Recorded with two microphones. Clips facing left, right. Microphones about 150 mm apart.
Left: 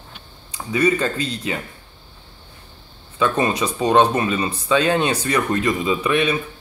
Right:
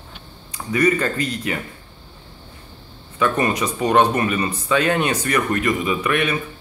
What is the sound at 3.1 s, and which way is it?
Speech, 20° left (ahead or behind).